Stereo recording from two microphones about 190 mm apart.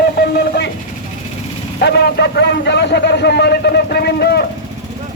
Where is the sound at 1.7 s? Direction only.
60° left (ahead or behind).